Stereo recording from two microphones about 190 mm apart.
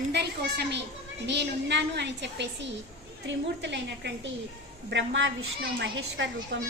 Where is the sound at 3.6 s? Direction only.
65° right (ahead or behind).